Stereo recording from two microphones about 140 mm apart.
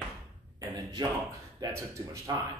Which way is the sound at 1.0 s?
30° right (ahead or behind).